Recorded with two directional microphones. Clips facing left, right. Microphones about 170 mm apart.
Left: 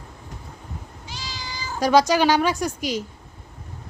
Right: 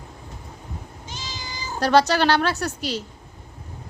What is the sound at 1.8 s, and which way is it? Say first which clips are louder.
A woman's voice: left 1 dB; 10° left (ahead or behind).